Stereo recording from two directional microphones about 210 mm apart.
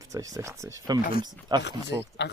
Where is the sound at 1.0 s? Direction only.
45° left (ahead or behind).